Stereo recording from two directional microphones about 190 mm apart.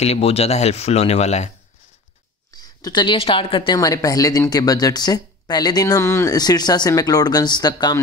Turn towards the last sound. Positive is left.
turn(degrees=20)  # may be behind; listen again after turning